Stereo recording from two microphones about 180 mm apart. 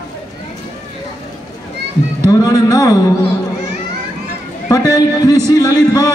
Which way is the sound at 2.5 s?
20° left (ahead or behind).